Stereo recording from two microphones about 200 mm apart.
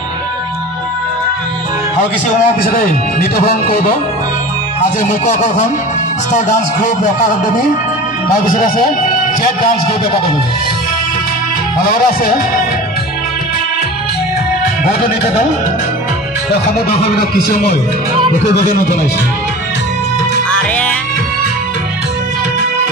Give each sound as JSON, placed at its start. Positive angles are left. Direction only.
{"t": 2.4, "sound": "a man's voice", "side_deg": 45}
{"t": 5.2, "sound": "a man's voice", "side_deg": 35}
{"t": 8.5, "sound": "a man's voice", "side_deg": 45}
{"t": 17.3, "sound": "a man's voice", "side_deg": 50}
{"t": 20.4, "sound": "music", "side_deg": 5}